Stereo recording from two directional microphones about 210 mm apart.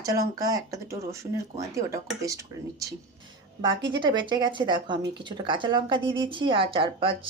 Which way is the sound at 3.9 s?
20° right (ahead or behind).